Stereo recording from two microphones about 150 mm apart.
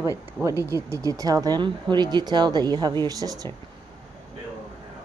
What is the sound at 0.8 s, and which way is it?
Speech, 20° right (ahead or behind).